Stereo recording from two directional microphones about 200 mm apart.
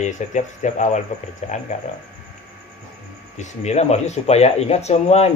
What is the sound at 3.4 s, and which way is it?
Speech, 35° left (ahead or behind).